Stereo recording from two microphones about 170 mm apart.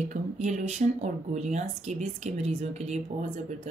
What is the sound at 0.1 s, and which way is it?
A woman's voice, 45° right (ahead or behind).